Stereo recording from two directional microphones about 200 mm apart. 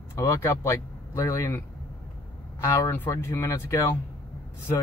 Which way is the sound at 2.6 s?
10° left (ahead or behind).